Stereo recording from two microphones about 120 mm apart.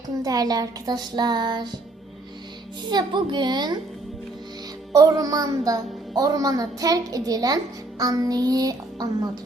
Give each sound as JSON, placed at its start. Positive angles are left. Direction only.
{"t": 0.1, "sound": "speech", "side_deg": -30}
{"t": 2.9, "sound": "speech", "side_deg": -40}
{"t": 4.9, "sound": "speech", "side_deg": -30}